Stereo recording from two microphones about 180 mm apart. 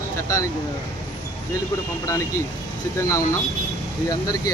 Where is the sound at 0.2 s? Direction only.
15° left (ahead or behind).